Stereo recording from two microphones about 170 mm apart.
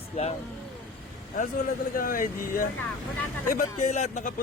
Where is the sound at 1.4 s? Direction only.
50° left (ahead or behind).